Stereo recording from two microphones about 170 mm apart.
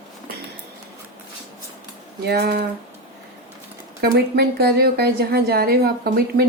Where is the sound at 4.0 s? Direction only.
65° right (ahead or behind).